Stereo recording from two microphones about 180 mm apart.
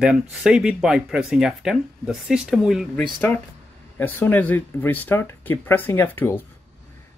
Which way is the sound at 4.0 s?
10° left (ahead or behind).